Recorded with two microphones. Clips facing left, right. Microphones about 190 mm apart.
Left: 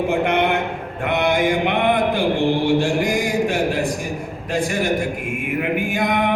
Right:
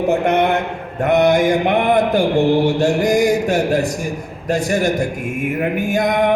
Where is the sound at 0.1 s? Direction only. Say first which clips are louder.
Right 5 dB; 40° right (ahead or behind).